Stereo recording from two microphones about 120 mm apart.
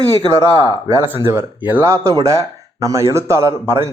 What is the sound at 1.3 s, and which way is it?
Speech, 20° right (ahead or behind).